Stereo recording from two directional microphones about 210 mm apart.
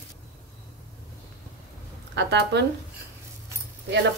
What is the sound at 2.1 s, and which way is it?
Speech, 55° right (ahead or behind).